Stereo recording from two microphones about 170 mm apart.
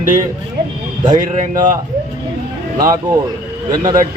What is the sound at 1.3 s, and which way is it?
Speech, 50° right (ahead or behind).